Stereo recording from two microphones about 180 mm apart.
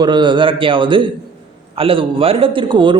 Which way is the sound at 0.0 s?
25° right (ahead or behind).